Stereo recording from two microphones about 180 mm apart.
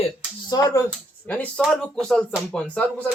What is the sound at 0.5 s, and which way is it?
Speech, 15° left (ahead or behind).